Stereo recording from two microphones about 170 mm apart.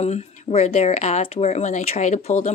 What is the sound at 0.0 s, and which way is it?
Speech, 40° left (ahead or behind).